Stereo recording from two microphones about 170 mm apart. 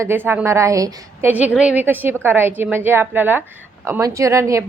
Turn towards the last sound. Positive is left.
turn(degrees=-15)  # may be behind; listen again after turning